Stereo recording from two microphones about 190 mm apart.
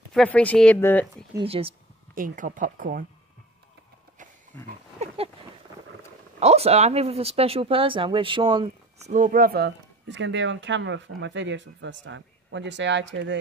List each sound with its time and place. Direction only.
0.1 s speech: 5° left (ahead or behind)
1.4 s speech: 30° right (ahead or behind)
2.1 s speech: 45° right (ahead or behind)
4.5 s speech: 10° left (ahead or behind)
5.0 s a sound: 30° right (ahead or behind)
6.4 s speech: 35° right (ahead or behind)
9.1 s speech: 45° right (ahead or behind); by 13.4 s 75° right (ahead or behind)